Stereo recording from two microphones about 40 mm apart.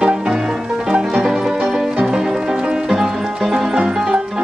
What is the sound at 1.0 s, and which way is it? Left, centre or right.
Music, centre.